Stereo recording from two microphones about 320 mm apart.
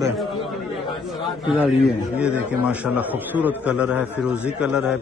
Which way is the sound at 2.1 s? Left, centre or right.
Centre.